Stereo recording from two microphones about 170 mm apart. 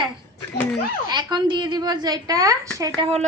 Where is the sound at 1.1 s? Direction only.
25° right (ahead or behind).